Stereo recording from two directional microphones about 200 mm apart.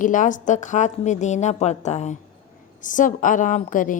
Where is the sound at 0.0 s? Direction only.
40° left (ahead or behind).